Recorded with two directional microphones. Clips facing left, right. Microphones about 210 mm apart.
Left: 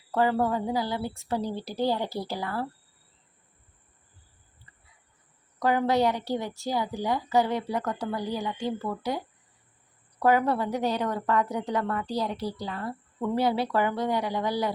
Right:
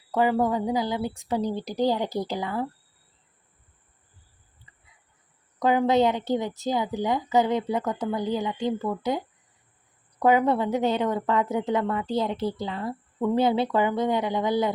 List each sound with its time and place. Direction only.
0.1 s a woman's voice: 15° right (ahead or behind)
5.5 s a woman's voice: 20° right (ahead or behind)